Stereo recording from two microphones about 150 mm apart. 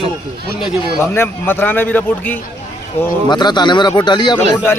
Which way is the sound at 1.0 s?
15° left (ahead or behind).